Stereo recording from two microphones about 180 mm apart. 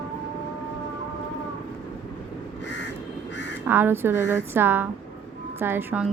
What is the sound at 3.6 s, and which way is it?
A woman's voice, 10° right (ahead or behind).